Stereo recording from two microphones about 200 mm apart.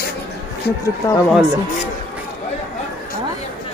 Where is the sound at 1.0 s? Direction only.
15° left (ahead or behind).